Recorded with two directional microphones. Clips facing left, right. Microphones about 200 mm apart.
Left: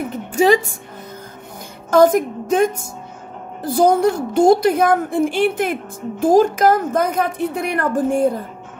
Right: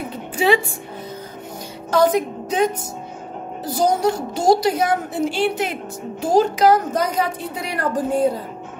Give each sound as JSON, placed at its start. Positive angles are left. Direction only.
{"t": 0.1, "sound": "music", "side_deg": 45}
{"t": 1.9, "sound": "a woman's voice", "side_deg": 50}